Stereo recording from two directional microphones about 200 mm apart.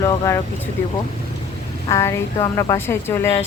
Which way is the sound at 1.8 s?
15° left (ahead or behind).